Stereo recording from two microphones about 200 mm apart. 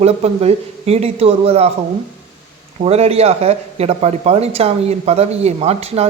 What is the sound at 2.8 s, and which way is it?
A man's voice, 30° right (ahead or behind).